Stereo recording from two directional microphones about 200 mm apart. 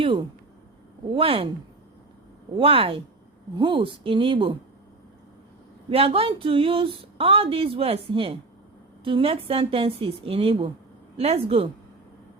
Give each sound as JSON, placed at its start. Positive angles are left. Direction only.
{"t": 0.0, "sound": "speech", "side_deg": -25}
{"t": 2.6, "sound": "speech", "side_deg": -25}
{"t": 5.9, "sound": "speech", "side_deg": -30}